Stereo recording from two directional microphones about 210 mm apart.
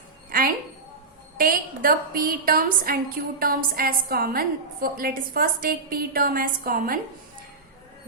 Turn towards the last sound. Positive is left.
turn(degrees=-40)  # may be behind; listen again after turning